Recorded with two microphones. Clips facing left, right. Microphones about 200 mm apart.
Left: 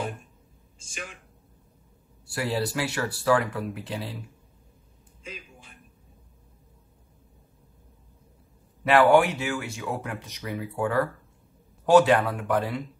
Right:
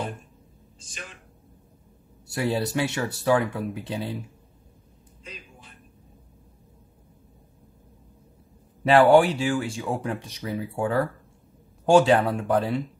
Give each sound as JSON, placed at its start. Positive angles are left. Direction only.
{"t": 2.2, "sound": "speech", "side_deg": -25}
{"t": 8.8, "sound": "speech", "side_deg": -30}